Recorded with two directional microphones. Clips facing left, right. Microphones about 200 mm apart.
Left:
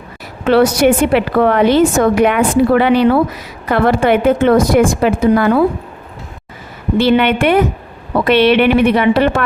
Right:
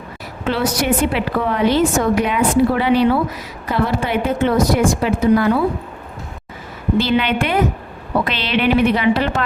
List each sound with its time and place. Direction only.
0.4 s a woman's voice: 70° left (ahead or behind)
7.0 s speech: 60° left (ahead or behind)